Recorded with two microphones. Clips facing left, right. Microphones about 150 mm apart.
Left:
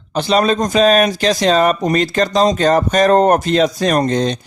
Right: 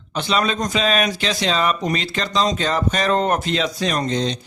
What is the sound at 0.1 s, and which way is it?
Speech, 40° left (ahead or behind).